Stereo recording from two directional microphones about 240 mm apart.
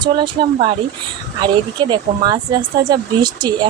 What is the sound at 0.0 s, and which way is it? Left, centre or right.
Speech, centre.